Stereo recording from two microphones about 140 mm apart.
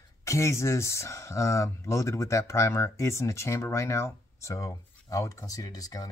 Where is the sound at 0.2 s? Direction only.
20° left (ahead or behind).